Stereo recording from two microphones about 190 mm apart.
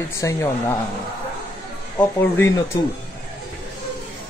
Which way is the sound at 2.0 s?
10° left (ahead or behind).